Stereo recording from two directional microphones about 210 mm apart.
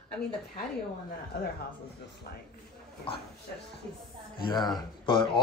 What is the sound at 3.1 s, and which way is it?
Speech, 25° left (ahead or behind).